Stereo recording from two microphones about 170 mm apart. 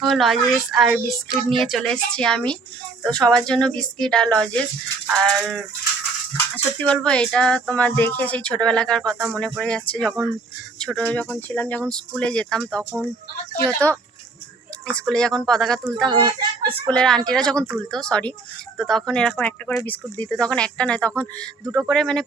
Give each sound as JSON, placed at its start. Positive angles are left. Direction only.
{"t": 0.0, "sound": "a woman's voice", "side_deg": 0}
{"t": 6.8, "sound": "a woman's voice", "side_deg": 5}
{"t": 16.1, "sound": "speech", "side_deg": -25}
{"t": 16.9, "sound": "a woman's voice", "side_deg": 5}